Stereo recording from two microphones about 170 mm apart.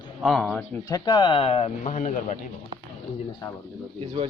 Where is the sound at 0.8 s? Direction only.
20° left (ahead or behind); by 2.4 s 45° left (ahead or behind).